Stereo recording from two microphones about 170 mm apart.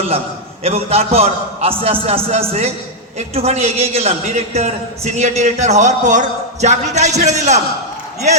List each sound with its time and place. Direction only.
0.6 s a man's voice: 35° right (ahead or behind)